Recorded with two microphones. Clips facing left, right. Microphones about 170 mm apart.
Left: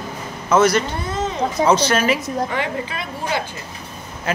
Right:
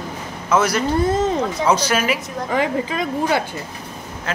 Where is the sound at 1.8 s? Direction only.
5° right (ahead or behind).